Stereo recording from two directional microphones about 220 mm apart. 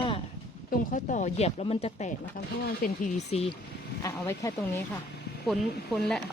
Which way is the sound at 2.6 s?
40° left (ahead or behind).